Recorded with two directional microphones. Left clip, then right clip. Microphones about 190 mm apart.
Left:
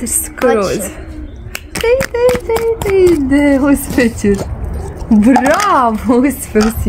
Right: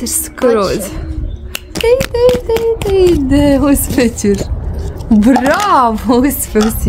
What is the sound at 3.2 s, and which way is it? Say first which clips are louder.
Speech: even; centre (ahead or behind).